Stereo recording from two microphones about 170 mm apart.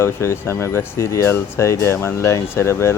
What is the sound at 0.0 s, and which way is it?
Speech, 15° left (ahead or behind).